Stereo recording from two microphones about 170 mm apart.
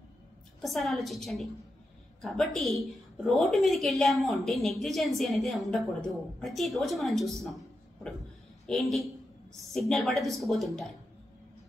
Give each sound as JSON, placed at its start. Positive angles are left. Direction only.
{"t": 0.6, "sound": "a woman's voice", "side_deg": 0}
{"t": 8.6, "sound": "a woman's voice", "side_deg": 0}